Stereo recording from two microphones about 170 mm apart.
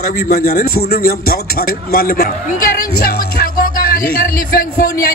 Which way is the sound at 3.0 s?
60° left (ahead or behind).